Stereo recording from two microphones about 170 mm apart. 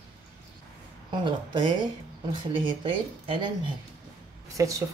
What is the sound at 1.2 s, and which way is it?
Speech, 25° right (ahead or behind).